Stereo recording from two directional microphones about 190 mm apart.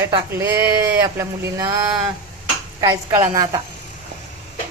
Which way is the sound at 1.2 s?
15° right (ahead or behind).